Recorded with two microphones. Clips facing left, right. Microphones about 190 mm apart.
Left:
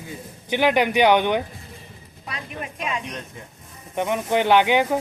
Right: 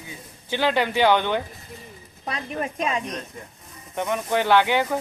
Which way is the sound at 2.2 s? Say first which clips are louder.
Right 5 dB; 40° right (ahead or behind).